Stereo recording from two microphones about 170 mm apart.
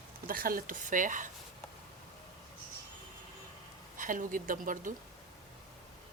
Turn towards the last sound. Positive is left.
turn(degrees=-50)  # may be behind; listen again after turning